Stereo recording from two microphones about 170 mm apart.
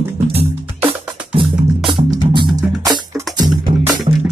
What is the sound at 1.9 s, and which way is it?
Music, 30° right (ahead or behind).